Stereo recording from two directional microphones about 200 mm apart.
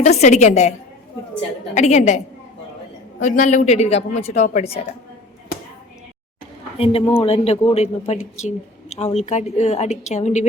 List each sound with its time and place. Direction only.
0.0 s a woman's voice: 35° left (ahead or behind)
1.7 s a woman's voice: 35° left (ahead or behind)
6.7 s a woman's voice: 30° left (ahead or behind)